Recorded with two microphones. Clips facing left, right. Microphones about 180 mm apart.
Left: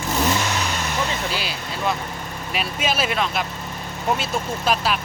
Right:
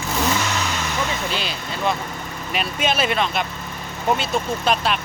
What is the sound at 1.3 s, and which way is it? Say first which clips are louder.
A man's voice: right 1 dB; 5° left (ahead or behind).